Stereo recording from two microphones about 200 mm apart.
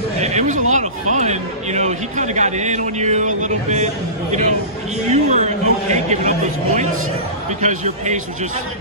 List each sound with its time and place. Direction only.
0.2 s a man's voice: 35° right (ahead or behind)